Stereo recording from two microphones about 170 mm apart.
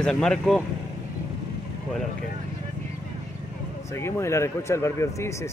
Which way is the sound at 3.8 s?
15° left (ahead or behind).